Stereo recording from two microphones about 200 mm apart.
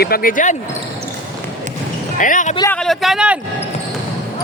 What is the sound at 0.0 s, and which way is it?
Speech, 45° left (ahead or behind).